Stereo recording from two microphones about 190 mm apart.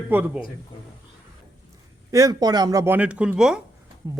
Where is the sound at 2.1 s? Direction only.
20° right (ahead or behind).